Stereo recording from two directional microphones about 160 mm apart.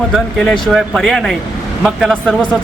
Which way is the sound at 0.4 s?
Centre (ahead or behind).